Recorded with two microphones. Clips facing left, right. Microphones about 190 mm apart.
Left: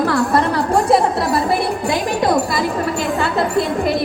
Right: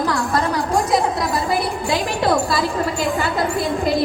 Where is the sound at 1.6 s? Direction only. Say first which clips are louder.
Left 2 dB; 20° left (ahead or behind).